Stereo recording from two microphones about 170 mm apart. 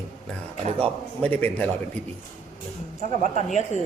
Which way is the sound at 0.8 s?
10° left (ahead or behind).